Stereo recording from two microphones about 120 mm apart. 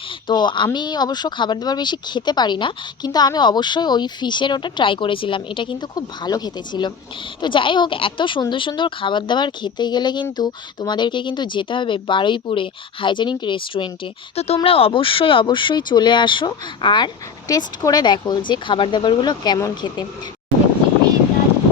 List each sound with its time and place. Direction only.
0.3 s speech: 40° left (ahead or behind)